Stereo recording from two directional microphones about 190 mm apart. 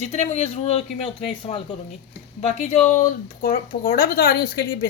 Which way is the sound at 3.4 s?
45° left (ahead or behind).